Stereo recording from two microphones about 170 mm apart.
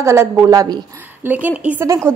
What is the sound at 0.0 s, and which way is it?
A woman's voice, 15° right (ahead or behind).